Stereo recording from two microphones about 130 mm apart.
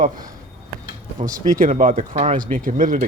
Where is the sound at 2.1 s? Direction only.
50° right (ahead or behind).